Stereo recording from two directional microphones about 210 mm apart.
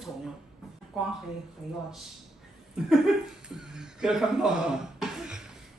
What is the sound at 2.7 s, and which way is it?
Chuckle, centre (ahead or behind).